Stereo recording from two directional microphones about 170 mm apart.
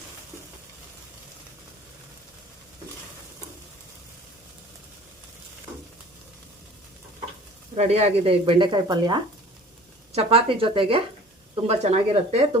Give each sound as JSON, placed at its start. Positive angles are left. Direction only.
{"t": 7.8, "sound": "speech", "side_deg": -40}
{"t": 10.2, "sound": "speech", "side_deg": -35}